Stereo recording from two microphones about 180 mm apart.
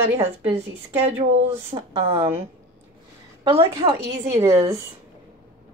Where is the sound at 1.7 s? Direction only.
30° right (ahead or behind).